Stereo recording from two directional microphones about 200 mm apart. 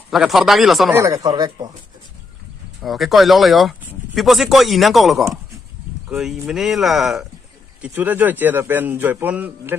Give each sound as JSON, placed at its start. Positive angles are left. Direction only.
{"t": 0.1, "sound": "speech", "side_deg": 0}
{"t": 0.9, "sound": "speech", "side_deg": -15}
{"t": 2.8, "sound": "a man's voice", "side_deg": 0}